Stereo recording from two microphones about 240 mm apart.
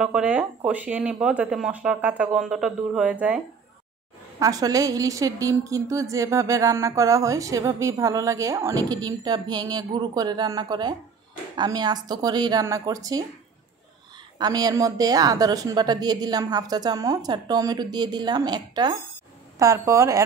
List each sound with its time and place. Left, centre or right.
0.0 s speech: centre
4.4 s a woman's voice: centre
14.4 s a woman's voice: centre